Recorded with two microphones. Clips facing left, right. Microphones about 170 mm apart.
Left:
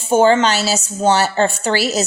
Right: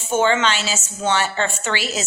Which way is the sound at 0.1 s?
35° left (ahead or behind).